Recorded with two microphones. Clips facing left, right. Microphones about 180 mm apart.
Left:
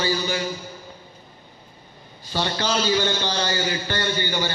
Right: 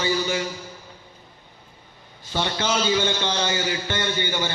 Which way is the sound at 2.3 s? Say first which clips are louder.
Even; 20° right (ahead or behind).